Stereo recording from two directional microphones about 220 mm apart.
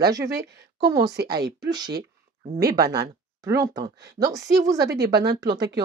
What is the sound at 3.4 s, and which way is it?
Speech, 15° right (ahead or behind).